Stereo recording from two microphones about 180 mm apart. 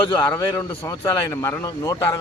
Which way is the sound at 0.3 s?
15° left (ahead or behind).